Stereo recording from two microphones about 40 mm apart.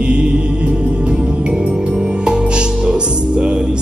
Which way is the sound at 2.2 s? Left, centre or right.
Right.